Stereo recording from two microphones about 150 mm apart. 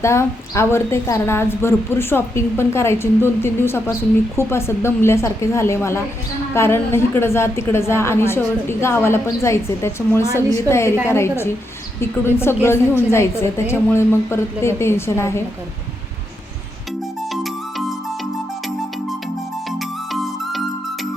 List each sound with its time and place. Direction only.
0.0 s a woman's voice: 20° left (ahead or behind)
17.3 s music: centre (ahead or behind)